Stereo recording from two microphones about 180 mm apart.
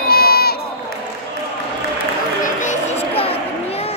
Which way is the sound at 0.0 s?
60° left (ahead or behind).